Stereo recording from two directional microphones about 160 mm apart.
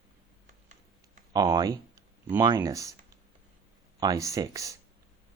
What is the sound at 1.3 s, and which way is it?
Speech, 25° right (ahead or behind).